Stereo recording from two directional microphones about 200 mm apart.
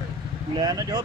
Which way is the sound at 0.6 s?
20° right (ahead or behind).